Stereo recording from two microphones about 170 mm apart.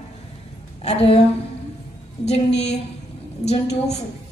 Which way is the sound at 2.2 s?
40° left (ahead or behind).